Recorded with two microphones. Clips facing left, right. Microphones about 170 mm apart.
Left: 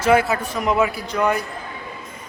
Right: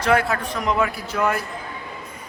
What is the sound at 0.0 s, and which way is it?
Speech, 5° left (ahead or behind).